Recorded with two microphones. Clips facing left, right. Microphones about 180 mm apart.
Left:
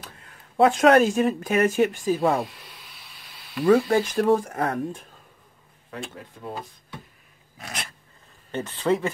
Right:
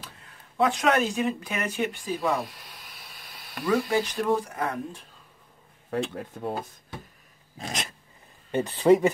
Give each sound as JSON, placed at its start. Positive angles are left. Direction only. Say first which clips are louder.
{"t": 0.7, "sound": "speech", "louder": "left 8 dB", "side_deg": 50}
{"t": 3.6, "sound": "speech", "louder": "left 6 dB", "side_deg": 45}
{"t": 5.9, "sound": "speech", "louder": "right 7 dB", "side_deg": -50}
{"t": 7.5, "sound": "dog", "louder": "right 3 dB", "side_deg": -25}
{"t": 8.5, "sound": "speech", "louder": "right 5 dB", "side_deg": -15}